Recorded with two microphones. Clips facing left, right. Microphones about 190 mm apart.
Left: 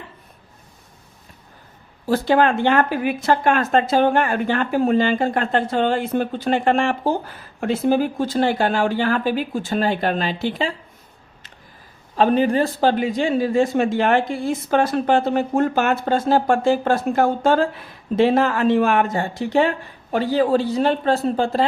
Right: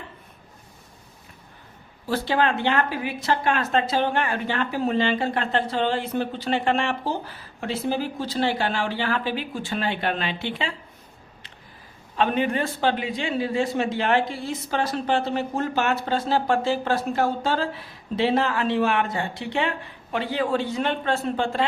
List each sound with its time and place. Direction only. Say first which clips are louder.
2.0 s a man's voice: left 6 dB; 45° left (ahead or behind)
12.1 s a man's voice: left 6 dB; 35° left (ahead or behind)